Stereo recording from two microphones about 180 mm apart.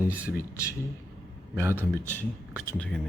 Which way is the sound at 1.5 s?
15° right (ahead or behind).